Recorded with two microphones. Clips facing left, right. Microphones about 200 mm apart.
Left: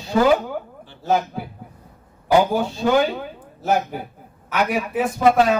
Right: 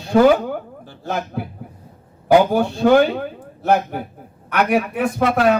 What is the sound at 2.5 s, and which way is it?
A man's voice, 60° right (ahead or behind).